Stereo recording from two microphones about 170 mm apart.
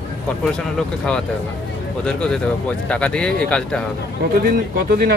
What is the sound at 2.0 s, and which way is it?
Speech, 5° left (ahead or behind).